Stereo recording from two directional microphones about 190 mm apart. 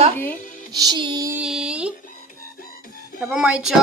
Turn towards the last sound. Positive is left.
turn(degrees=-5)  # may be behind; listen again after turning